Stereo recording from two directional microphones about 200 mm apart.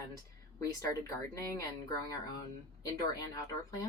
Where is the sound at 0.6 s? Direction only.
15° left (ahead or behind).